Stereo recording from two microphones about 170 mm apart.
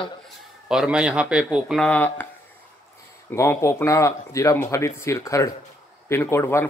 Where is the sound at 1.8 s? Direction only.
10° left (ahead or behind).